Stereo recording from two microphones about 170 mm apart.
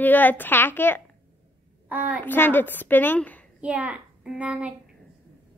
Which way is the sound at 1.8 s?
10° right (ahead or behind).